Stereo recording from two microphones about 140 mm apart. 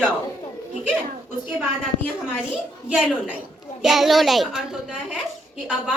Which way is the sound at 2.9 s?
5° right (ahead or behind).